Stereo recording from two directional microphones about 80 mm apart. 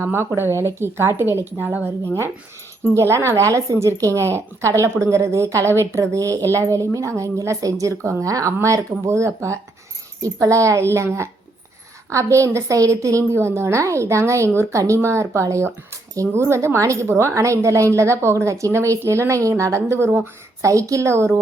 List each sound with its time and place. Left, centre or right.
0.0 s a woman's voice: right
2.9 s a woman's voice: right